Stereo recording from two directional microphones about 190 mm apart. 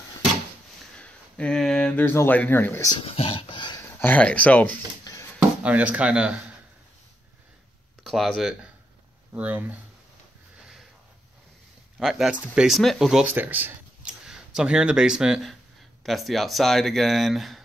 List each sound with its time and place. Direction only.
0.9 s a sound: 5° left (ahead or behind)
3.0 s dog: 30° left (ahead or behind)
4.0 s speech: 10° left (ahead or behind)
5.6 s speech: 5° right (ahead or behind)
8.0 s speech: centre (ahead or behind)
12.0 s speech: centre (ahead or behind)